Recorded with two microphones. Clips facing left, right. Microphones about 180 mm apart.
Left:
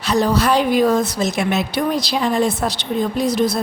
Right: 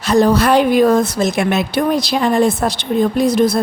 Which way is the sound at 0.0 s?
50° right (ahead or behind).